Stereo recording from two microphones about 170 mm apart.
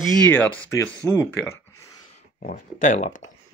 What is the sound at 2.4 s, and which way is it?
Speech, 50° left (ahead or behind).